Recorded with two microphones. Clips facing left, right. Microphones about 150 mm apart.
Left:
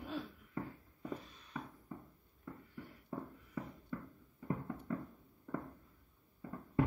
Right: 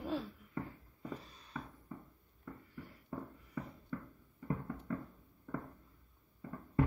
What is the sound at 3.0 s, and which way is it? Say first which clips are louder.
Music: even; 10° left (ahead or behind).